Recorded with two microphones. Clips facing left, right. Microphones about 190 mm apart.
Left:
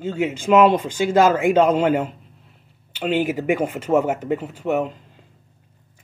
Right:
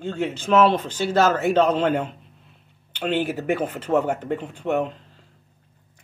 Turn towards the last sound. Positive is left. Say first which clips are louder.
# left 1 dB
turn(degrees=10)  # may be behind; listen again after turning